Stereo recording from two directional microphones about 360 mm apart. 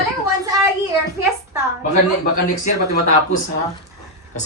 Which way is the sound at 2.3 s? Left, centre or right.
Left.